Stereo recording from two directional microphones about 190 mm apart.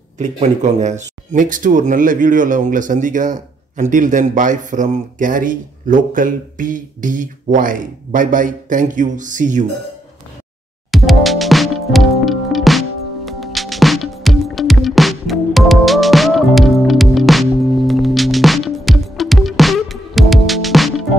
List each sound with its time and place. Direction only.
0.2 s speech: 35° right (ahead or behind)
10.9 s music: centre (ahead or behind)